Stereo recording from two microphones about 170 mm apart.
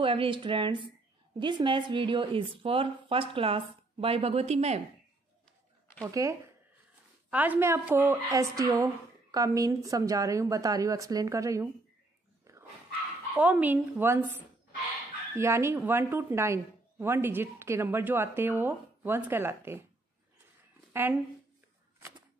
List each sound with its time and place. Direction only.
0.0 s a woman's voice: 30° right (ahead or behind)
6.2 s a woman's voice: 20° right (ahead or behind)
12.5 s dog: 15° right (ahead or behind)
13.4 s speech: 10° right (ahead or behind)
20.9 s speech: 10° right (ahead or behind)